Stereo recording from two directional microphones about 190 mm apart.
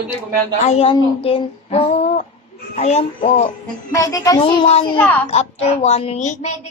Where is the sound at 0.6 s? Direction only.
30° left (ahead or behind).